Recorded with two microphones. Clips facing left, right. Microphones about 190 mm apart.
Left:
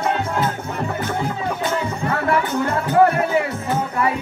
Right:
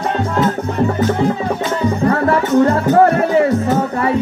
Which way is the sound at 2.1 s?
35° right (ahead or behind).